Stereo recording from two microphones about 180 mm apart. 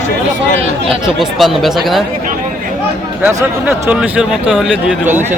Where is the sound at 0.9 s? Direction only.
Centre (ahead or behind).